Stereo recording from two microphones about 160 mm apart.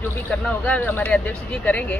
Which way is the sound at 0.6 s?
10° left (ahead or behind).